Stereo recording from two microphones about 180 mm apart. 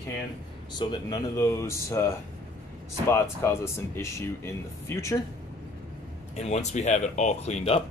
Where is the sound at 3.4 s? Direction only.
15° left (ahead or behind).